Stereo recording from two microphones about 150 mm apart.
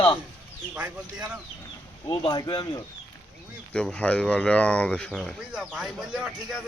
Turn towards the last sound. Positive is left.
turn(degrees=-5)  # may be behind; listen again after turning